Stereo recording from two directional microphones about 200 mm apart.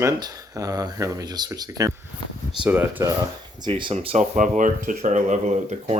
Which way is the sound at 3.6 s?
25° right (ahead or behind).